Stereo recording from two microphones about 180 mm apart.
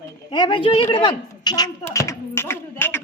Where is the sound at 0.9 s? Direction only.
25° left (ahead or behind).